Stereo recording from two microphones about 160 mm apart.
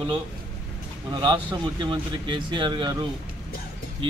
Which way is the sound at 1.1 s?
25° right (ahead or behind).